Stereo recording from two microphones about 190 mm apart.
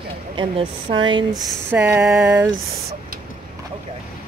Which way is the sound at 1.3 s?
5° right (ahead or behind).